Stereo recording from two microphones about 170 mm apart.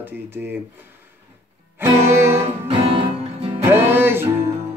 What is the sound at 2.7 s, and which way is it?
Music, 30° right (ahead or behind).